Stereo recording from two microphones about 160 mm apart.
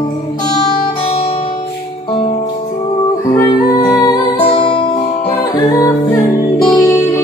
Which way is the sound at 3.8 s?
25° left (ahead or behind).